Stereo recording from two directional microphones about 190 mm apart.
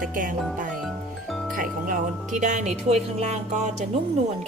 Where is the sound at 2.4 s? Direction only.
40° right (ahead or behind).